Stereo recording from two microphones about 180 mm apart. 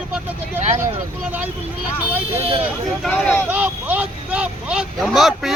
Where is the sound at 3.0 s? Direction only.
10° left (ahead or behind).